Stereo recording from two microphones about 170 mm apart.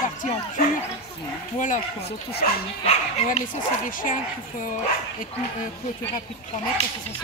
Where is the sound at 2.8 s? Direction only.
40° left (ahead or behind).